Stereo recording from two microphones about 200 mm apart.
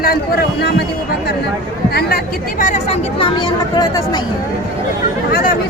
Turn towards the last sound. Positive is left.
turn(degrees=20)  # may be behind; listen again after turning